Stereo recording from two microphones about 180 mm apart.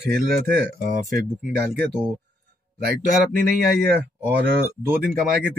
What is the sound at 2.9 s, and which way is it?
Speech, 50° right (ahead or behind).